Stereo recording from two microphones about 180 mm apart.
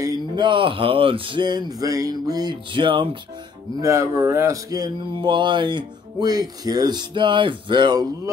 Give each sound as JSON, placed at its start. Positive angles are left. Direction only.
{"t": 0.0, "sound": "speech", "side_deg": -20}
{"t": 3.8, "sound": "speech", "side_deg": -15}